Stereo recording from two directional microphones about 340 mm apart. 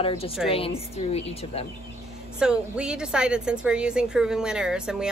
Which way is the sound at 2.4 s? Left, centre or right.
Centre.